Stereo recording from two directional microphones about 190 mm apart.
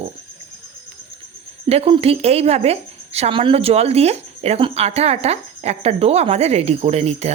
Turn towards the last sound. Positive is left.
turn(degrees=-35)  # may be behind; listen again after turning